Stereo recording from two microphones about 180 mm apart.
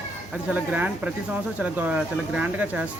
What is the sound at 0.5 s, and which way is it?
Speech, 10° right (ahead or behind).